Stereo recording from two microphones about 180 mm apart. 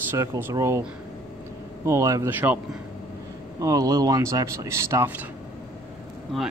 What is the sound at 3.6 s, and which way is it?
A man's voice, 20° right (ahead or behind).